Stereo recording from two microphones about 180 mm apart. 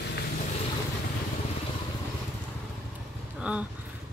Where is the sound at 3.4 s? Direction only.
5° right (ahead or behind).